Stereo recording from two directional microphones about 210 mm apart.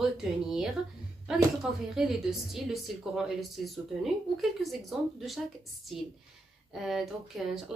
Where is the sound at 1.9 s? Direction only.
Centre (ahead or behind).